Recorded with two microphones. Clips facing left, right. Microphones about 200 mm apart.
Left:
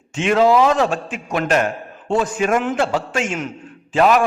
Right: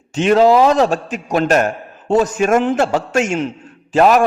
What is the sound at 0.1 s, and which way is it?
A man's voice, 35° right (ahead or behind).